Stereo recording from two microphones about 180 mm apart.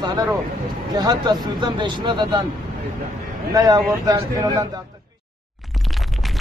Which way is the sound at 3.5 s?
20° right (ahead or behind).